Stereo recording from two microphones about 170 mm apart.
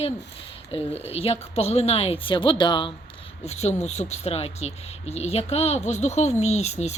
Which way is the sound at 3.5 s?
40° left (ahead or behind).